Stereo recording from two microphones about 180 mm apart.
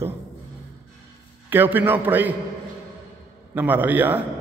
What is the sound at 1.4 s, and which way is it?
Speech, 10° right (ahead or behind).